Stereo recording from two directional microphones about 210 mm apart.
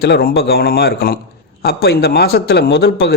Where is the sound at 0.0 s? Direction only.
50° left (ahead or behind).